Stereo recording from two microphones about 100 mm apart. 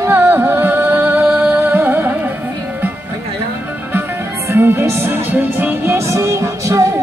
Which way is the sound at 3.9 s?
20° right (ahead or behind).